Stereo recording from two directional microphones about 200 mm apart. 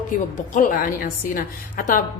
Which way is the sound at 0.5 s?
45° left (ahead or behind).